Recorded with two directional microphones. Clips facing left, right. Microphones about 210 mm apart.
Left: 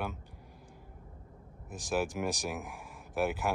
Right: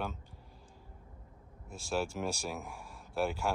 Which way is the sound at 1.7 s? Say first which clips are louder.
Left 2 dB; 15° left (ahead or behind).